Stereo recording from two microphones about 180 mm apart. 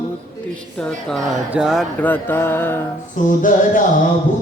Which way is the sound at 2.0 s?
10° left (ahead or behind).